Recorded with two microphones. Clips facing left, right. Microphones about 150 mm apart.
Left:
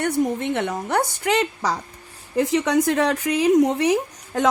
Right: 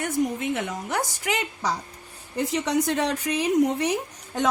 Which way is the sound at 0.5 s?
65° left (ahead or behind).